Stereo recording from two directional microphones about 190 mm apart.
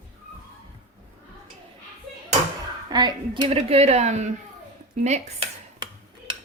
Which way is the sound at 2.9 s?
20° right (ahead or behind).